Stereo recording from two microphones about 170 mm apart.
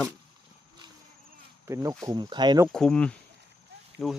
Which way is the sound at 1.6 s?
20° right (ahead or behind).